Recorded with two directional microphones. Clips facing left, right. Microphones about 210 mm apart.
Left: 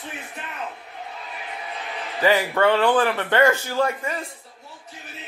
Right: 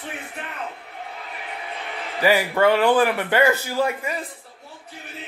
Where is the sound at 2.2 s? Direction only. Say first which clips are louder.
Right 1 dB; 10° right (ahead or behind).